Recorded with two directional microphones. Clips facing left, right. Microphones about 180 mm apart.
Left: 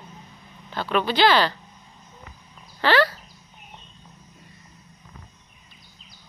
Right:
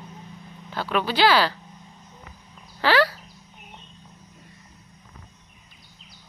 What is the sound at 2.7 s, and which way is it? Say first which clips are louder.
Speech: even; 10° right (ahead or behind).